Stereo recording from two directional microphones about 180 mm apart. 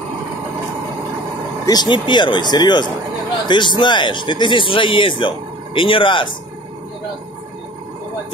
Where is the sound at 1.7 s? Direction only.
25° left (ahead or behind).